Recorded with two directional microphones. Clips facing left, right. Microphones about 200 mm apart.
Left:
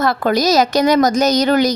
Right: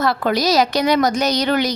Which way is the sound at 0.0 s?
50° left (ahead or behind).